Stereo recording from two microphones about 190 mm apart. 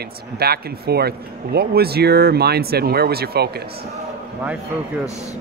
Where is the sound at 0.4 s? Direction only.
55° right (ahead or behind).